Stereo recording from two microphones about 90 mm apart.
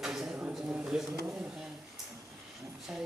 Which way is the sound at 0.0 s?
5° right (ahead or behind).